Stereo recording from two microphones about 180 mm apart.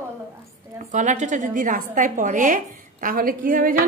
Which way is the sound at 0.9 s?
40° right (ahead or behind).